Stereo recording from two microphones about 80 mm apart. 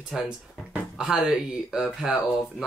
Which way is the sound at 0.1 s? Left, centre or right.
Centre.